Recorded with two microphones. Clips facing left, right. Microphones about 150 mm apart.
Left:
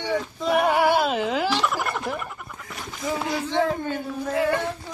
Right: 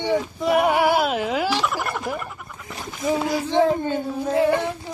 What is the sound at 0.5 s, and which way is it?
Speech, 5° right (ahead or behind).